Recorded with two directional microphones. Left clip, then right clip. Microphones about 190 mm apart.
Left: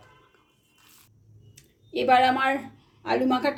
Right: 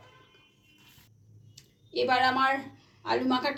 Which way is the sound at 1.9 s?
40° left (ahead or behind).